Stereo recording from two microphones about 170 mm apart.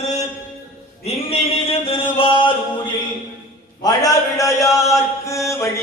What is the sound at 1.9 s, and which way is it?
Mantra, 30° left (ahead or behind).